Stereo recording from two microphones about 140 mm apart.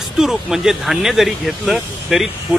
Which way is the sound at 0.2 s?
5° right (ahead or behind).